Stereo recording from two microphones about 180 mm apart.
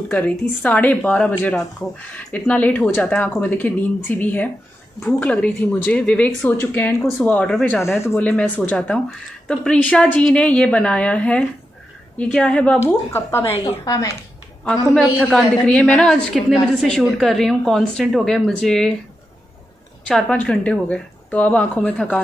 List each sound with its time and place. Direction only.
0.1 s speech: 10° left (ahead or behind)
15.0 s a woman's voice: 5° left (ahead or behind)
20.1 s speech: 5° left (ahead or behind)